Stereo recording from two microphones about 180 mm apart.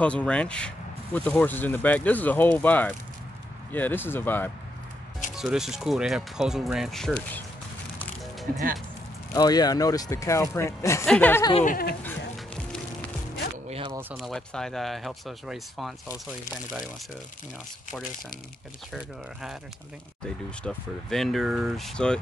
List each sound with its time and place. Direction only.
0.0 s speech: 5° left (ahead or behind)
5.3 s speech: 5° right (ahead or behind)
9.3 s speech: 20° left (ahead or behind)
11.6 s speech: 50° left (ahead or behind)
13.7 s zipper: 30° right (ahead or behind)
14.1 s speech: centre (ahead or behind)
20.6 s speech: centre (ahead or behind)